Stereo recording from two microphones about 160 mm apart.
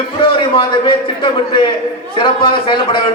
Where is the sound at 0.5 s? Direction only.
30° left (ahead or behind).